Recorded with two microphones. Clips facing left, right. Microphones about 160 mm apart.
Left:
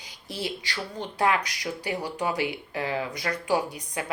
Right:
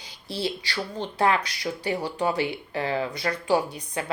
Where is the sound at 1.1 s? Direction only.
15° left (ahead or behind).